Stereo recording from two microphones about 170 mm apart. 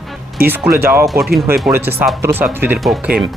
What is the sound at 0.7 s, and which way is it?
Speech, 60° right (ahead or behind).